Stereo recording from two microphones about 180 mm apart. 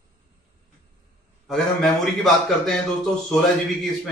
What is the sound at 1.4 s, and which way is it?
A man's voice, centre (ahead or behind).